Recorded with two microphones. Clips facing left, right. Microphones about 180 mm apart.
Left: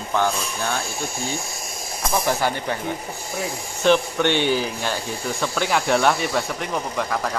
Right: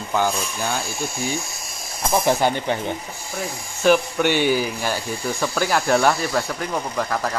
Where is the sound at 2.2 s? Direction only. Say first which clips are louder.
Right 5 dB; 20° right (ahead or behind).